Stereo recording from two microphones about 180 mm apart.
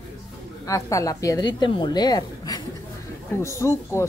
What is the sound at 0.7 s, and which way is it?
A woman's voice, 15° left (ahead or behind).